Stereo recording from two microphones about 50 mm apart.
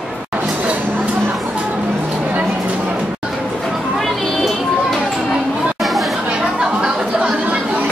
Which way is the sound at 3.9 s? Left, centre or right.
Centre.